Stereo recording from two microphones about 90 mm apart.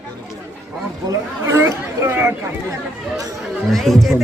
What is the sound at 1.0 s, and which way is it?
Speech, 35° right (ahead or behind).